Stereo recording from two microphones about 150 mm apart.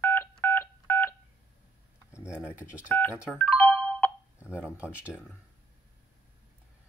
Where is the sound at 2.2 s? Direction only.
5° right (ahead or behind).